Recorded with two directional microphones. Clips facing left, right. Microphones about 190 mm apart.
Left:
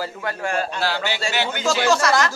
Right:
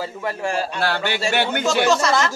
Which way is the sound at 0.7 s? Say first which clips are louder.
Right 2 dB; 55° right (ahead or behind).